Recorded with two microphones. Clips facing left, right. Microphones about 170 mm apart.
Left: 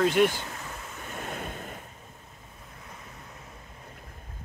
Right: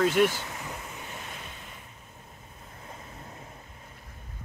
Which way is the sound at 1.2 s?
50° left (ahead or behind).